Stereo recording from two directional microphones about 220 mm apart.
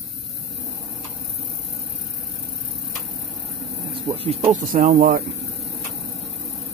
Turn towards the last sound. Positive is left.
turn(degrees=-40)  # may be behind; listen again after turning